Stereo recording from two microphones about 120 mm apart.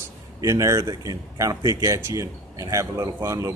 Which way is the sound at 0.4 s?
25° right (ahead or behind).